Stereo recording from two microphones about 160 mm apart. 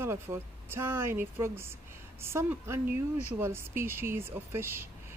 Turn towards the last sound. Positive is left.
turn(degrees=-15)  # may be behind; listen again after turning